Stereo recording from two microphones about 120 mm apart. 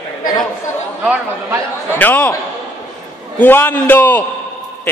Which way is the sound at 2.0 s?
15° left (ahead or behind).